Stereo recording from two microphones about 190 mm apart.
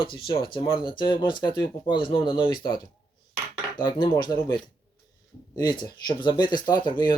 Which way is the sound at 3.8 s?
20° left (ahead or behind).